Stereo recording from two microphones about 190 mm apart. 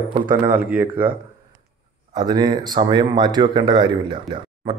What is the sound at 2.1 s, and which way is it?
Speech, 20° right (ahead or behind).